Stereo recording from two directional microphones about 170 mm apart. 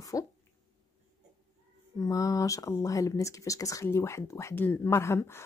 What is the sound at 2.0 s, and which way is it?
Speech, 20° left (ahead or behind).